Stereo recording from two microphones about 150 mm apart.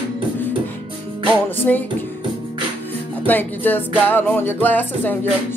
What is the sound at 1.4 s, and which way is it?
Music, 10° left (ahead or behind).